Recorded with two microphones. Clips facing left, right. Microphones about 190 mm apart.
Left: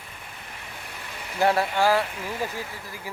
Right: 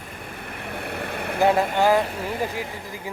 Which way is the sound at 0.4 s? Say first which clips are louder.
Right 12 dB; 60° right (ahead or behind).